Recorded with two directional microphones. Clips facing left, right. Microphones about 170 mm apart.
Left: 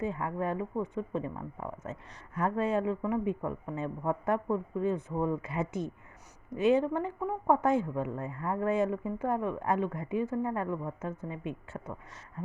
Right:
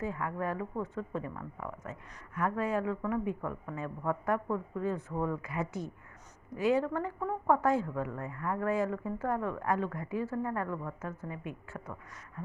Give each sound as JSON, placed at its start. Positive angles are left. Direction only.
{"t": 0.0, "sound": "speech", "side_deg": 25}